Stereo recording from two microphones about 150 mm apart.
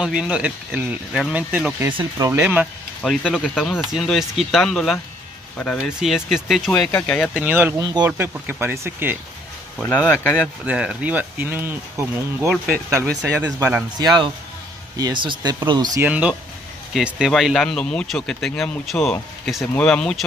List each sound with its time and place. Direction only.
0.0 s speech: 5° right (ahead or behind)
3.0 s speech: centre (ahead or behind)
5.9 s speech: 5° right (ahead or behind)
6.7 s speech: 10° left (ahead or behind)
7.4 s speech: 15° right (ahead or behind)
8.0 s speech: 10° right (ahead or behind)
9.8 s speech: 10° left (ahead or behind)
10.6 s speech: 10° right (ahead or behind)
13.9 s speech: 30° right (ahead or behind)
16.0 s speech: 10° right (ahead or behind)